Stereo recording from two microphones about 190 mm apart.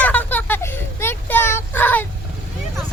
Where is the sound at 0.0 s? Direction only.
10° left (ahead or behind).